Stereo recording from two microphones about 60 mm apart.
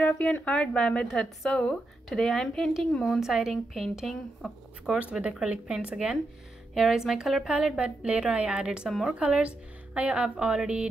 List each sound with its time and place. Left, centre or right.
0.0 s a woman's voice: left
3.2 s a woman's voice: centre
4.0 s a woman's voice: centre
4.8 s a woman's voice: centre
6.7 s a woman's voice: centre